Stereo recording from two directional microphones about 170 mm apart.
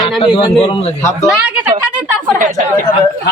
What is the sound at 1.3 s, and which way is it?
Speech, 5° right (ahead or behind).